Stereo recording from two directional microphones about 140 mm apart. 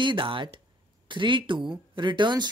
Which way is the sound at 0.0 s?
35° right (ahead or behind).